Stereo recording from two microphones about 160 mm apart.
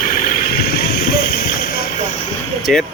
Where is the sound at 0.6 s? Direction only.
75° left (ahead or behind).